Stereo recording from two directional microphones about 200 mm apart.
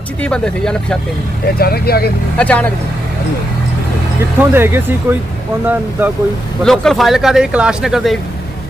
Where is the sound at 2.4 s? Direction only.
5° left (ahead or behind).